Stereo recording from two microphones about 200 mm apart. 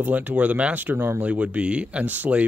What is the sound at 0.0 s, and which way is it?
A man's voice, 10° right (ahead or behind).